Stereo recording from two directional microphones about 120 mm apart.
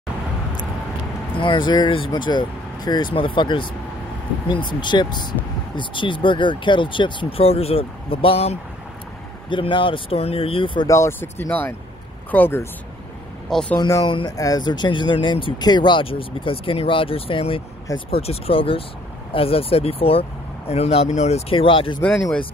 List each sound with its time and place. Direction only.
1.4 s speech: 40° left (ahead or behind)
9.5 s speech: 45° left (ahead or behind)
10.9 s speech: 20° left (ahead or behind)
13.5 s speech: 5° left (ahead or behind)
13.7 s speech: 30° left (ahead or behind)
14.0 s speech: 40° left (ahead or behind)
14.3 s speech: 30° left (ahead or behind)